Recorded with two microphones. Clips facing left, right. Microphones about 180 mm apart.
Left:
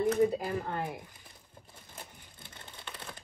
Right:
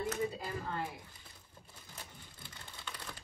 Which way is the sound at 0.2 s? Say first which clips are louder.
Left 9 dB; 50° left (ahead or behind).